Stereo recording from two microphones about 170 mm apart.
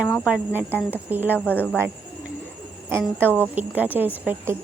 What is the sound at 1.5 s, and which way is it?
Speech, 10° left (ahead or behind).